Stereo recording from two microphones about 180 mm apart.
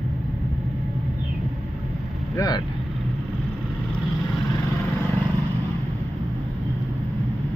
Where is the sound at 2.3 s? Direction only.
20° left (ahead or behind).